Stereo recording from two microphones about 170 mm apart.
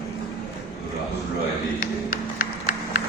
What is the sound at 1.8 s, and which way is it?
Music, 55° left (ahead or behind).